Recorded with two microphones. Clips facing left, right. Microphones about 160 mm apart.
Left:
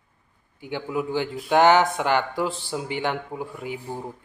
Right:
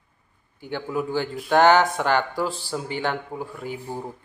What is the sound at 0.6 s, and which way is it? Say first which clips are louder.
Speech: even; 15° left (ahead or behind).